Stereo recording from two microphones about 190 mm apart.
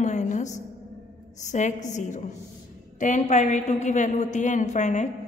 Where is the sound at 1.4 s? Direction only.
40° left (ahead or behind).